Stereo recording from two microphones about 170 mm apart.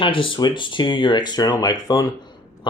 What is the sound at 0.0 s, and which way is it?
Speech, 30° left (ahead or behind).